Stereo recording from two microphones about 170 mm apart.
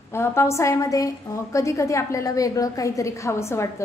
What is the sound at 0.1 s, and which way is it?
A woman's voice, 15° left (ahead or behind).